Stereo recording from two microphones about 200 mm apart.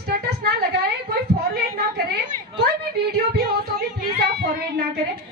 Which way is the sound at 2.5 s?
55° right (ahead or behind).